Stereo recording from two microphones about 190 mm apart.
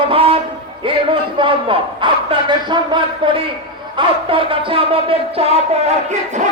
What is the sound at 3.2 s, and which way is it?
Music, 25° right (ahead or behind).